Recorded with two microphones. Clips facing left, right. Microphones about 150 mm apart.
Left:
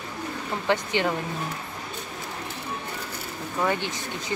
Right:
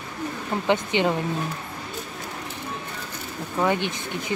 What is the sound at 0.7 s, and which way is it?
Speech, 20° right (ahead or behind).